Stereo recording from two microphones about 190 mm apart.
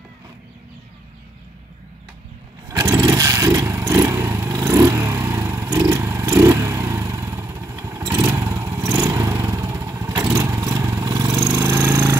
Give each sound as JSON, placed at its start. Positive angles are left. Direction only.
{"t": 2.7, "sound": "vehicle", "side_deg": -15}